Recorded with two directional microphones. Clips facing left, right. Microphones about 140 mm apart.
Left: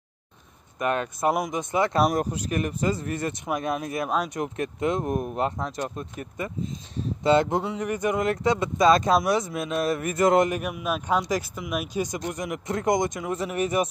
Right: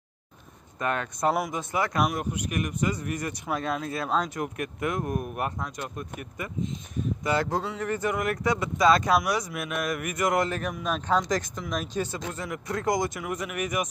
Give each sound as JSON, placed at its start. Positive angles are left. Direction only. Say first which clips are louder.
{"t": 0.7, "sound": "speech", "louder": "left 3 dB", "side_deg": 20}
{"t": 10.5, "sound": "speech", "louder": "left 2 dB", "side_deg": 10}